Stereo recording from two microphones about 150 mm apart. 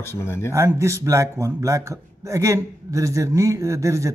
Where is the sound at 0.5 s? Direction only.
20° right (ahead or behind).